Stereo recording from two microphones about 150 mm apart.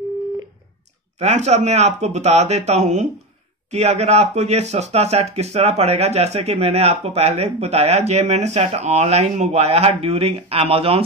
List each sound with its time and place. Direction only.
1.2 s speech: 50° right (ahead or behind)